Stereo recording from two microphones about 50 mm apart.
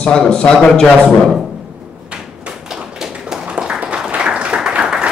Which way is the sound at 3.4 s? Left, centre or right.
Right.